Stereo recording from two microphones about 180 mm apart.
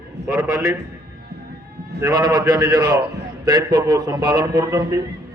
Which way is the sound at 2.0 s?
20° right (ahead or behind).